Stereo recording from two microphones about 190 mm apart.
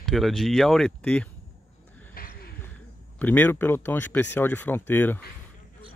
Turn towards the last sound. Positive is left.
turn(degrees=10)  # may be behind; listen again after turning